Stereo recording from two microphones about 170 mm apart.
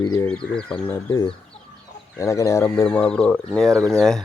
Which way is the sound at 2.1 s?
15° left (ahead or behind).